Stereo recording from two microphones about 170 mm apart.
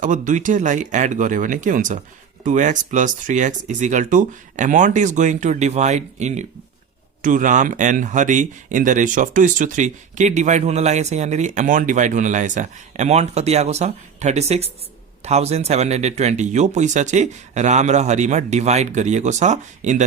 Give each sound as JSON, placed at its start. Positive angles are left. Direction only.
{"t": 0.0, "sound": "speech", "side_deg": -50}